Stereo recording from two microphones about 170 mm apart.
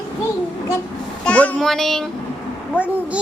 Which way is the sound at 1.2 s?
10° left (ahead or behind).